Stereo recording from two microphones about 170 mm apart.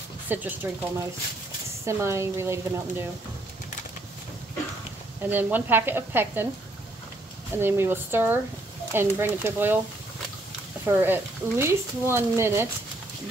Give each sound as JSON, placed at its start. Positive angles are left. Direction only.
{"t": 0.3, "sound": "speech", "side_deg": -10}
{"t": 5.3, "sound": "speech", "side_deg": -10}
{"t": 7.5, "sound": "speech", "side_deg": -15}
{"t": 10.9, "sound": "speech", "side_deg": -15}